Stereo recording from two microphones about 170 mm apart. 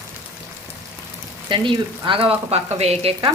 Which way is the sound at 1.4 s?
30° right (ahead or behind).